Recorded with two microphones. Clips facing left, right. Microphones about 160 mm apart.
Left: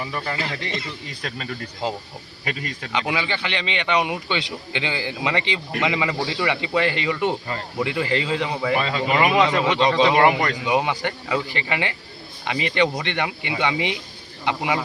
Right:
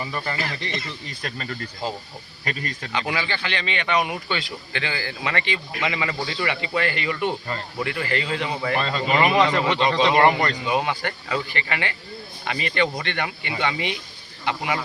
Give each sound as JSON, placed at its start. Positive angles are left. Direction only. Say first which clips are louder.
{"t": 0.0, "sound": "speech", "louder": "left 1 dB", "side_deg": 5}
{"t": 0.3, "sound": "speech", "louder": "left 1 dB", "side_deg": 20}
{"t": 10.7, "sound": "speech", "louder": "left 2 dB", "side_deg": 20}